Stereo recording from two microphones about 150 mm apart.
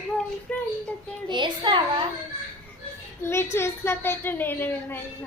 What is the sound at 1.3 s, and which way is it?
Speech, 30° right (ahead or behind).